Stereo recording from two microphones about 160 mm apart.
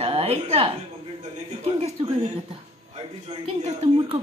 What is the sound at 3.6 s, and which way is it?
Speech, 45° right (ahead or behind).